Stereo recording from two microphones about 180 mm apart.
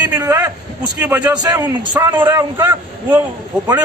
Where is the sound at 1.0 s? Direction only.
10° right (ahead or behind).